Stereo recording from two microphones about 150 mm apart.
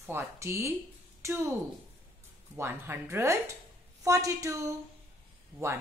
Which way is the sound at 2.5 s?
15° right (ahead or behind).